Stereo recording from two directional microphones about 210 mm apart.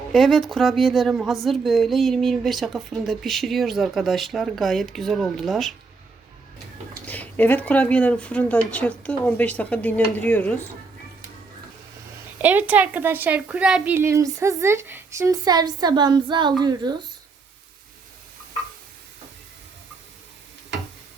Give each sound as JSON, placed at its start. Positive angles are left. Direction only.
{"t": 0.1, "sound": "speech", "side_deg": 0}
{"t": 7.1, "sound": "speech", "side_deg": 10}
{"t": 12.4, "sound": "a woman's voice", "side_deg": -10}